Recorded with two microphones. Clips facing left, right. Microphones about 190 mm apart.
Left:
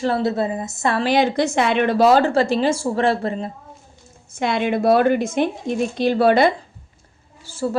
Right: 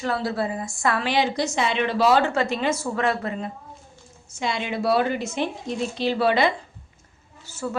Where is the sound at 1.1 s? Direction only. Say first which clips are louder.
Left 5 dB; 55° left (ahead or behind); by 3.5 s 30° left (ahead or behind).